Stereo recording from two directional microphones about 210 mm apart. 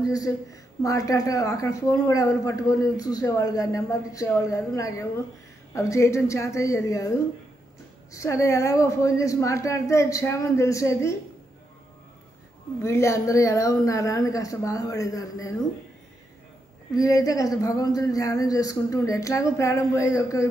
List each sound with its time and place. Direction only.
0.0 s speech: 15° left (ahead or behind)
12.8 s speech: 15° left (ahead or behind)
16.9 s speech: 15° left (ahead or behind)